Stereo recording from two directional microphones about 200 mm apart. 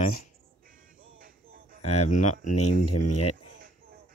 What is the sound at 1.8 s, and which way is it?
Speech, 30° left (ahead or behind).